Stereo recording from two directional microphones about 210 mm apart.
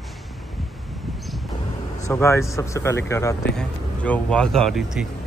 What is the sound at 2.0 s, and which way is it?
Speech, 15° left (ahead or behind).